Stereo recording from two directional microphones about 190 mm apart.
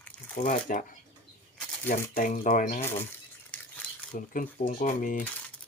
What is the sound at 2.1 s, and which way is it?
Speech, 45° left (ahead or behind).